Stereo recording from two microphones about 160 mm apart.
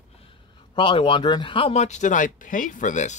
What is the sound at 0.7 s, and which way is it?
Speech, 30° left (ahead or behind).